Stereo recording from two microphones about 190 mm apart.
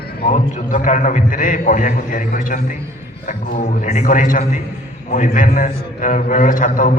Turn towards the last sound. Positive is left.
turn(degrees=45)  # may be behind; listen again after turning